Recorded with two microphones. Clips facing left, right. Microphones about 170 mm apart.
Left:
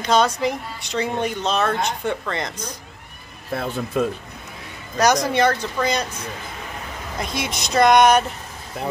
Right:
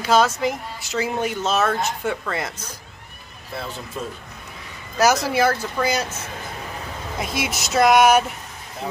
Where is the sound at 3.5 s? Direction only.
55° left (ahead or behind).